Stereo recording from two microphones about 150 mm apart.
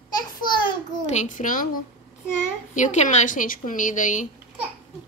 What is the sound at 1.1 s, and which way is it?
Speech, 55° left (ahead or behind).